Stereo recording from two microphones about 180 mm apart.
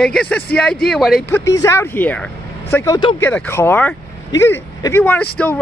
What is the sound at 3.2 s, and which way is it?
Speech, 10° left (ahead or behind).